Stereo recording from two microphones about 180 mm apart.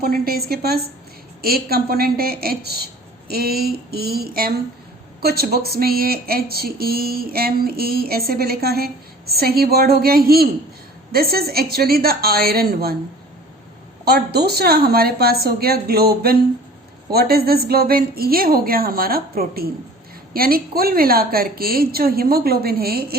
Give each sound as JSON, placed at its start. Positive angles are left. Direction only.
{"t": 0.0, "sound": "speech", "side_deg": -60}
{"t": 14.0, "sound": "speech", "side_deg": -60}